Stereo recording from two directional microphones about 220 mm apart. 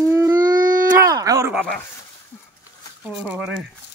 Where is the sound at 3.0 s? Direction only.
5° right (ahead or behind).